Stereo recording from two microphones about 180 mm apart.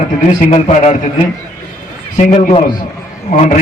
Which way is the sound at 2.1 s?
45° left (ahead or behind).